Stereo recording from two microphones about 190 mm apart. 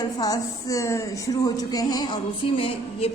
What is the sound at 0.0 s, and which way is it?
A woman's voice, 20° left (ahead or behind).